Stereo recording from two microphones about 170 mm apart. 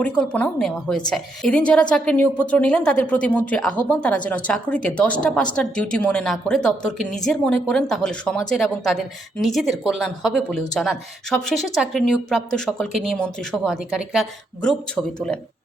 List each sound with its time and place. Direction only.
0.0 s a woman's voice: 5° left (ahead or behind)